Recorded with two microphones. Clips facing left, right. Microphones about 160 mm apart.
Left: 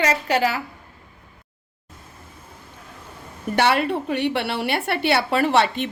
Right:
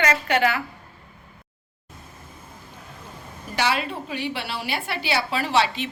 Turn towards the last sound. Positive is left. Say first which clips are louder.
# left 4 dB
turn(degrees=55)  # may be behind; listen again after turning